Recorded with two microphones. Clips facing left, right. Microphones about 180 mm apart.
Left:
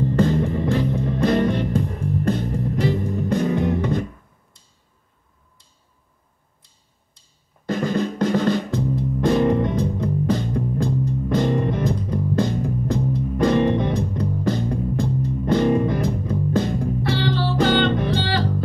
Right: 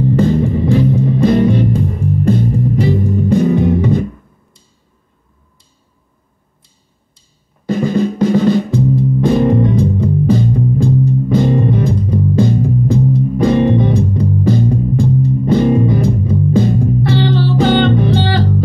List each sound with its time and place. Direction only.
0.0 s music: 10° right (ahead or behind)
7.6 s drum: 10° right (ahead or behind)
17.0 s music: 20° right (ahead or behind)